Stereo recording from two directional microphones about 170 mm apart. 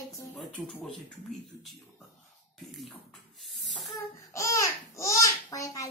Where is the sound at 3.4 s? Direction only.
Centre (ahead or behind).